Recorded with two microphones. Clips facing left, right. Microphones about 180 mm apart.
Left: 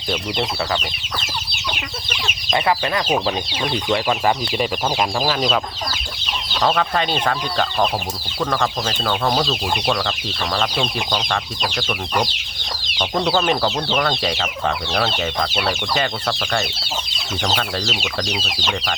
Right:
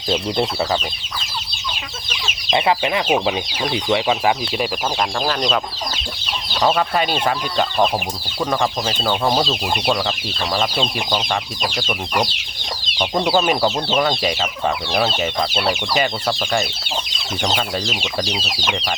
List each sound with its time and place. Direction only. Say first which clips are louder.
2.6 s speech: right 2 dB; 15° right (ahead or behind); by 5.5 s 5° left (ahead or behind)
6.6 s speech: right 1 dB; 5° right (ahead or behind)
11.1 s speech: right 1 dB; 5° right (ahead or behind)
13.2 s speech: right 2 dB; 10° right (ahead or behind)
15.9 s speech: right 2 dB; 10° right (ahead or behind)